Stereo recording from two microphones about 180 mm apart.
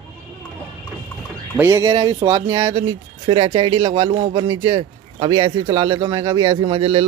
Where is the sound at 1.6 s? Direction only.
15° right (ahead or behind).